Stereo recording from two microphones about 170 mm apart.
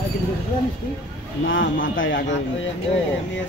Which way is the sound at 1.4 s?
90° left.